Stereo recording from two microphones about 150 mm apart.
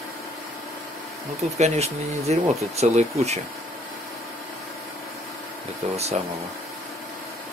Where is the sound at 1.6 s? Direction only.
45° right (ahead or behind).